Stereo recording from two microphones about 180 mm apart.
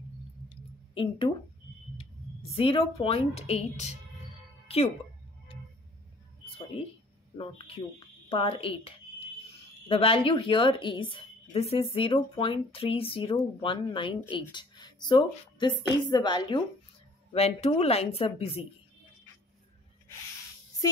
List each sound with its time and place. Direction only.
0.9 s a woman's voice: 30° left (ahead or behind)
2.5 s speech: 30° left (ahead or behind)
7.3 s a woman's voice: 30° left (ahead or behind)
17.3 s speech: 35° left (ahead or behind)
20.8 s speech: 20° left (ahead or behind)